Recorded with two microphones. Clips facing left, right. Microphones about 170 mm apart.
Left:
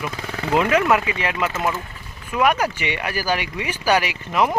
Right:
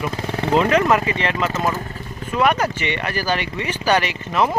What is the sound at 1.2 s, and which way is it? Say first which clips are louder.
Speech: right 2 dB; 10° left (ahead or behind).